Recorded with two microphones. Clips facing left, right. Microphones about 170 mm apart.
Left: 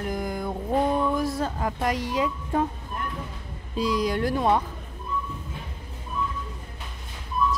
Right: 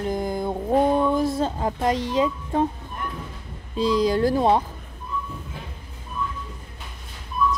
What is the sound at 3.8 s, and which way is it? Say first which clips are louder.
Speech: right 5 dB; 25° right (ahead or behind).